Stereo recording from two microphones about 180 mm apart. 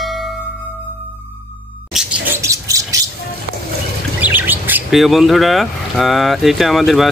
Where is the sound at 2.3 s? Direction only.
15° right (ahead or behind).